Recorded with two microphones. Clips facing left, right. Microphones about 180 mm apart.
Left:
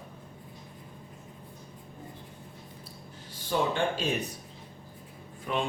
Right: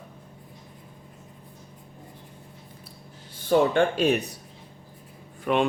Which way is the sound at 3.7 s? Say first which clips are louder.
Right 7 dB; 65° right (ahead or behind).